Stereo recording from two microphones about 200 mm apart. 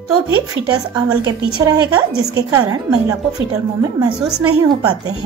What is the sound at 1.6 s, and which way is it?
A woman's voice, 20° right (ahead or behind).